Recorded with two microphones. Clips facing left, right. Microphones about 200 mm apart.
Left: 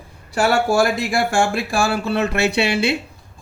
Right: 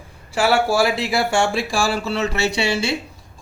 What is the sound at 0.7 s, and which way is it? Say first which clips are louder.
A man's voice: left 1 dB; 45° left (ahead or behind).